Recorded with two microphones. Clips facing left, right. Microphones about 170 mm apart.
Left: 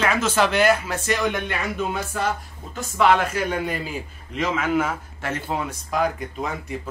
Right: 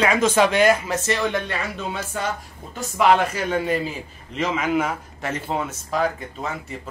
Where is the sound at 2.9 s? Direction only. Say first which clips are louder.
Right 1 dB; centre (ahead or behind).